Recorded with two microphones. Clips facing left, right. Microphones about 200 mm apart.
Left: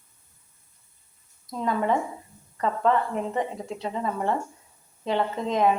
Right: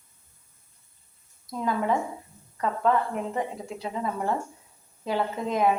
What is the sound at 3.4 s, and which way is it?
A woman's voice, 5° right (ahead or behind).